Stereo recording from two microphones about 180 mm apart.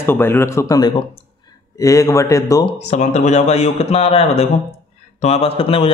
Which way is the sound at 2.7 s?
40° left (ahead or behind).